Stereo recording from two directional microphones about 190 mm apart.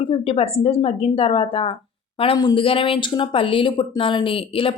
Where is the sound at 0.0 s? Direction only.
30° left (ahead or behind).